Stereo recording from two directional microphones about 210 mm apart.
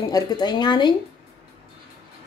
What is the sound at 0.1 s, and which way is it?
Speech, 20° left (ahead or behind).